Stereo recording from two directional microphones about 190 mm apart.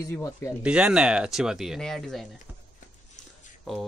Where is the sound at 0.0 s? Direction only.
15° left (ahead or behind).